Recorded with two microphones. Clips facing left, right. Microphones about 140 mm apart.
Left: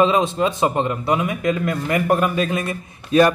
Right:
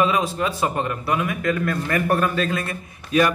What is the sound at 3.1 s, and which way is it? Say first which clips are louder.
Speech: left 4 dB; 35° left (ahead or behind).